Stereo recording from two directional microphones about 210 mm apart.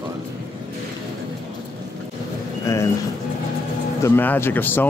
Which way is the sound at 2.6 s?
15° left (ahead or behind).